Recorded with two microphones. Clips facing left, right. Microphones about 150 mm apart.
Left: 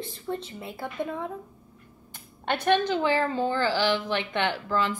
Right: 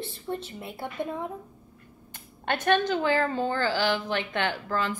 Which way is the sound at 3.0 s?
45° right (ahead or behind).